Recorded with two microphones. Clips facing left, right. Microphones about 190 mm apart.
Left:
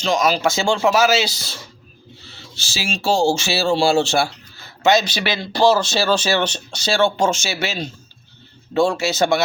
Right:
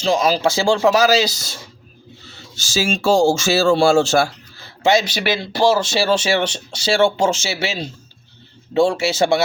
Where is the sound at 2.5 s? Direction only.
45° right (ahead or behind).